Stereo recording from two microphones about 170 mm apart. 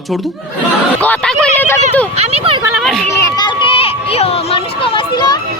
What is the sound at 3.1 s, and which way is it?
Speech, 20° left (ahead or behind).